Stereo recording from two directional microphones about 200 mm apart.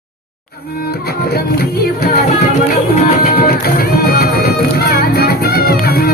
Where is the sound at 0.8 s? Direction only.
50° left (ahead or behind).